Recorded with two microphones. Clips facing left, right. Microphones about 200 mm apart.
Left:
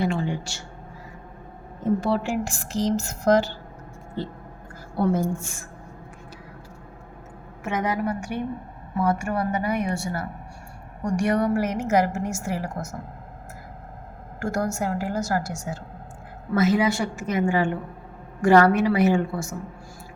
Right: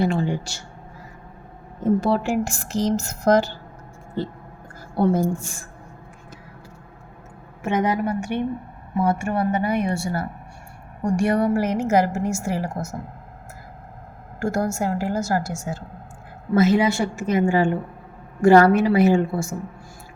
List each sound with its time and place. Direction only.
0.0 s a woman's voice: 40° right (ahead or behind)
2.0 s speech: 45° right (ahead or behind)
4.9 s a woman's voice: 35° right (ahead or behind)
7.6 s a woman's voice: 25° right (ahead or behind)
14.3 s a woman's voice: 30° right (ahead or behind)